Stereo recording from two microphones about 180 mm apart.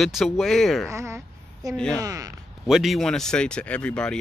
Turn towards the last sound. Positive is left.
turn(degrees=5)  # may be behind; listen again after turning